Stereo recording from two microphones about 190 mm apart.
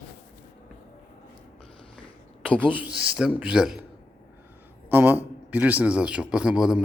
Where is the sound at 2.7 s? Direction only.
5° right (ahead or behind).